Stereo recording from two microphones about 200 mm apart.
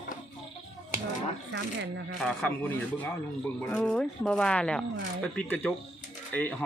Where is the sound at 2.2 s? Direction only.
Centre (ahead or behind).